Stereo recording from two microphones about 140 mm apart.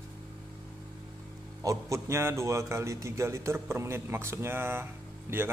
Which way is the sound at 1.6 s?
25° right (ahead or behind).